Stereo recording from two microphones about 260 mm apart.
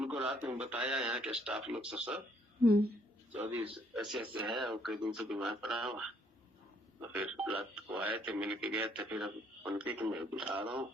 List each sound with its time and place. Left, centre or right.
0.0 s radio: centre
0.4 s speech: centre
2.6 s a woman's voice: right
3.3 s a man's voice: centre